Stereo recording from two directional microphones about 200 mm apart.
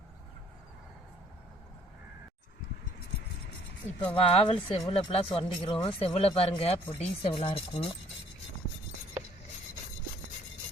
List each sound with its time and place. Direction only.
4.1 s speech: 30° left (ahead or behind)